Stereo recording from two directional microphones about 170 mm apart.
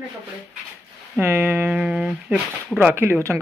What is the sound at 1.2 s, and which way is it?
Speech, 15° right (ahead or behind).